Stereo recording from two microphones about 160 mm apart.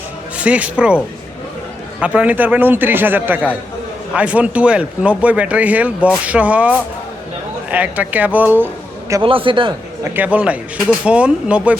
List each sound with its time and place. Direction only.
0.3 s speech: 10° right (ahead or behind)
2.0 s speech: 10° right (ahead or behind)
9.2 s a man's voice: 35° right (ahead or behind)
10.0 s speech: 10° right (ahead or behind)